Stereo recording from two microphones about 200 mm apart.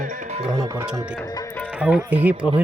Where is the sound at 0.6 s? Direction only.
15° right (ahead or behind).